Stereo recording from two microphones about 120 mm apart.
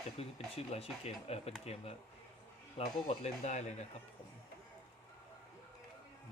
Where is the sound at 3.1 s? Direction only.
75° left (ahead or behind).